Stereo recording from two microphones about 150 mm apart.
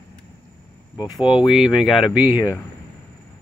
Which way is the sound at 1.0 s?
30° left (ahead or behind).